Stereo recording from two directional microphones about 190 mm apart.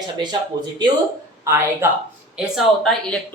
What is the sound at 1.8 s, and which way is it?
Speech, 10° right (ahead or behind).